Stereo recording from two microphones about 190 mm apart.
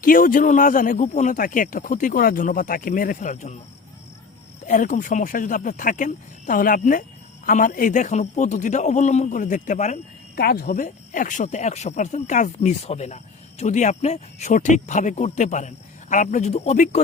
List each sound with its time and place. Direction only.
0.0 s speech: 45° left (ahead or behind)
4.6 s speech: 45° left (ahead or behind)
10.3 s speech: 55° left (ahead or behind)